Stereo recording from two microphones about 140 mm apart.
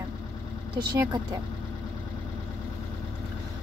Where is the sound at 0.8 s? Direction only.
30° right (ahead or behind).